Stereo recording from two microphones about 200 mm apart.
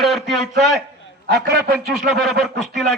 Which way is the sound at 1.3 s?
55° right (ahead or behind).